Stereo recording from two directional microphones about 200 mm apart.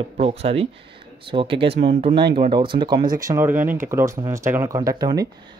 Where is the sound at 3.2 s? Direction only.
10° right (ahead or behind).